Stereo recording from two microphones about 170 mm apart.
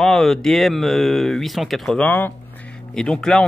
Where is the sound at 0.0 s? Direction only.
Centre (ahead or behind).